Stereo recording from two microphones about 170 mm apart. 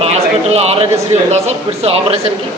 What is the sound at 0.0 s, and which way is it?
A man's voice, 40° right (ahead or behind).